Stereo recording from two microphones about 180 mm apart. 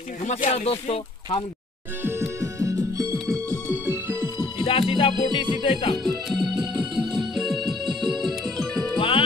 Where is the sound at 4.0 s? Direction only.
15° right (ahead or behind).